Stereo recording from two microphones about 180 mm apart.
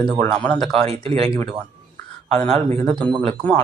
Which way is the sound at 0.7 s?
35° right (ahead or behind).